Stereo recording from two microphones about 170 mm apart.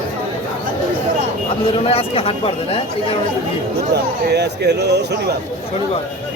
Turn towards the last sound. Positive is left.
turn(degrees=-80)